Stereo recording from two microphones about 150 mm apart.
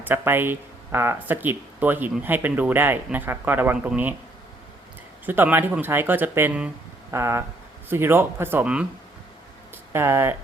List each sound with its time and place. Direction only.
0.0 s speech: 15° right (ahead or behind)
5.2 s speech: 10° right (ahead or behind)
9.9 s speech: 15° right (ahead or behind)